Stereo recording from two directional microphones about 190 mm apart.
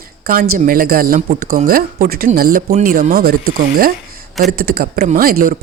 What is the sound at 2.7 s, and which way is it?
Speech, 40° right (ahead or behind).